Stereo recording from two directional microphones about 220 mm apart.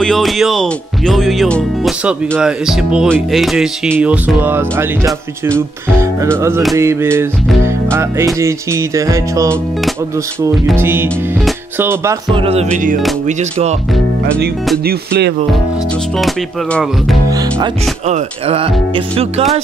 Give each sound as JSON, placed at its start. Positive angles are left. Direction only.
{"t": 0.0, "sound": "speech", "side_deg": 0}
{"t": 5.9, "sound": "music", "side_deg": -10}
{"t": 10.8, "sound": "music", "side_deg": -10}
{"t": 12.7, "sound": "speech", "side_deg": -35}
{"t": 14.9, "sound": "speech", "side_deg": -45}
{"t": 16.2, "sound": "speech", "side_deg": 0}
{"t": 18.0, "sound": "speech", "side_deg": -30}